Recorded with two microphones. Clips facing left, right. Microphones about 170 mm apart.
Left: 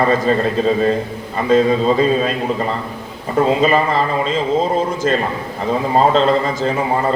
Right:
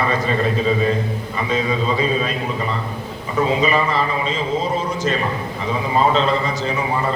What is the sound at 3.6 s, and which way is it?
Speech, 45° left (ahead or behind).